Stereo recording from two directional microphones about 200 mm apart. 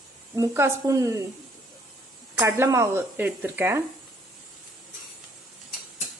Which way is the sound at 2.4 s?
15° right (ahead or behind).